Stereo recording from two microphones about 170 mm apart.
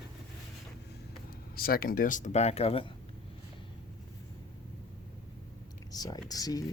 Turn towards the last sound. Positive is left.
turn(degrees=20)  # may be behind; listen again after turning